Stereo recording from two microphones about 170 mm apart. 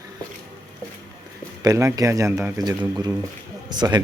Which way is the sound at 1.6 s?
20° right (ahead or behind).